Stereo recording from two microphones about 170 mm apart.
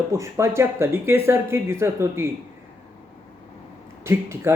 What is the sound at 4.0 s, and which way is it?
Speech, 15° right (ahead or behind).